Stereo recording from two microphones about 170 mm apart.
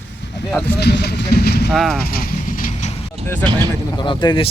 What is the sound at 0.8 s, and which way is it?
Speech, 75° left (ahead or behind).